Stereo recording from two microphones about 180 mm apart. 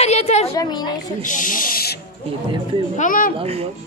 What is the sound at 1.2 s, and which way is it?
Speech, 45° left (ahead or behind).